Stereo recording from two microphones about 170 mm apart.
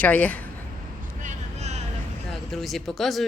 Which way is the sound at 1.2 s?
40° right (ahead or behind).